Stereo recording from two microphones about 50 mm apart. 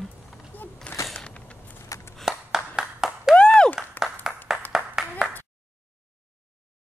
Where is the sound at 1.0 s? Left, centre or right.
Left.